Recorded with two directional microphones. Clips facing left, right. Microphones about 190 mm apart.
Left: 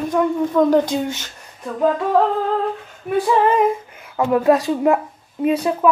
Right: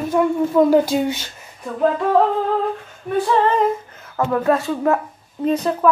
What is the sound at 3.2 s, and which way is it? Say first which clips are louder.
Speech: left 1 dB; 10° left (ahead or behind).